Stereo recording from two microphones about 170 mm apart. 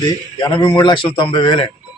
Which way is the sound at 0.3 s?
25° left (ahead or behind).